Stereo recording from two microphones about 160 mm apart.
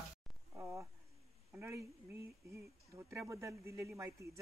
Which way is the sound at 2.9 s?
15° right (ahead or behind).